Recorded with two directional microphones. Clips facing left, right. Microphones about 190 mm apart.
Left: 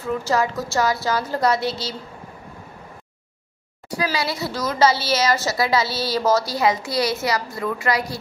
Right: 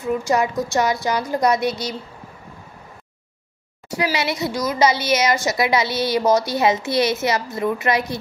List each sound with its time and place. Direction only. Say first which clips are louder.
0.0 s a woman's voice: right 2 dB; 20° right (ahead or behind)
3.9 s a woman's voice: right 2 dB; 20° right (ahead or behind)